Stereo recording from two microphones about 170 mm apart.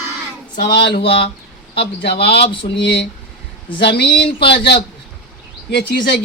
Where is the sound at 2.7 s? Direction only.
90° left.